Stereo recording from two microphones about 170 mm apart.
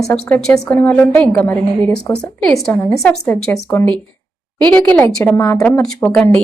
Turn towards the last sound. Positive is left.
turn(degrees=10)  # may be behind; listen again after turning